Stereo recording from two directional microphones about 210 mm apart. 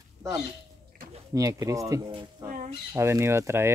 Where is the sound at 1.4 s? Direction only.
15° right (ahead or behind).